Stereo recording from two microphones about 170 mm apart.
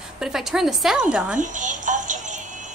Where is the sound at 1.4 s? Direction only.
50° right (ahead or behind).